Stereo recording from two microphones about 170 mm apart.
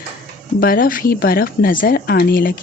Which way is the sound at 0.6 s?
55° left (ahead or behind).